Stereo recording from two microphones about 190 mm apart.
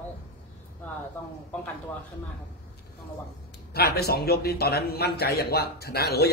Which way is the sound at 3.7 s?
55° left (ahead or behind).